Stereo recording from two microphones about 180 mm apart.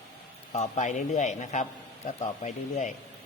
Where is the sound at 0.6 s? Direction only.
45° left (ahead or behind).